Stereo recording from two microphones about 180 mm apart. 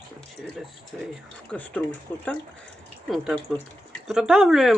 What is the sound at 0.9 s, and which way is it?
Speech, centre (ahead or behind).